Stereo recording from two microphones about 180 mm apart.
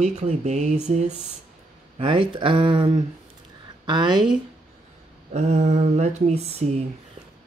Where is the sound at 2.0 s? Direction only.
30° right (ahead or behind).